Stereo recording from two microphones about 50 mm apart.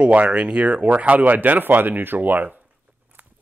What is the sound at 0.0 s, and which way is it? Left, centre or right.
Speech, right.